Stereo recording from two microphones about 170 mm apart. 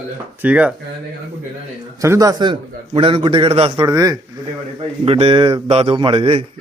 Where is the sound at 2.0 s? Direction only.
20° right (ahead or behind); by 3.9 s 35° right (ahead or behind).